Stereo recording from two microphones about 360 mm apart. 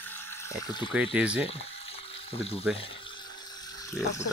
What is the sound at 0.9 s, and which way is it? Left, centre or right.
Speech, centre.